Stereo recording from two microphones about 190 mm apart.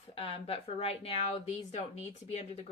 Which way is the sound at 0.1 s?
30° left (ahead or behind).